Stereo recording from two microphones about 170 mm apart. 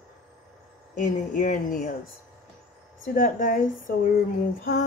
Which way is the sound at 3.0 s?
55° left (ahead or behind).